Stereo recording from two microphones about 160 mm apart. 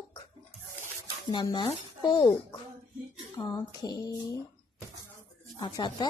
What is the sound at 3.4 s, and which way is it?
Speech, 25° left (ahead or behind).